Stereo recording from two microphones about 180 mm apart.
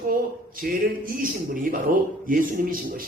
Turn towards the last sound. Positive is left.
turn(degrees=-50)  # may be behind; listen again after turning